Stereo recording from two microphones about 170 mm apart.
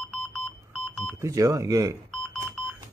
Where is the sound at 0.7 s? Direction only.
5° left (ahead or behind).